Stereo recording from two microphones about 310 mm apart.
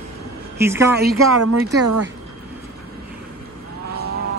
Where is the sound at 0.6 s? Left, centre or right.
Centre.